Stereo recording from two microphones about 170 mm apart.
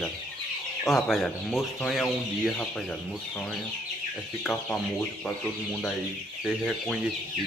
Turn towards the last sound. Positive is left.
turn(degrees=0)  # may be behind; listen again after turning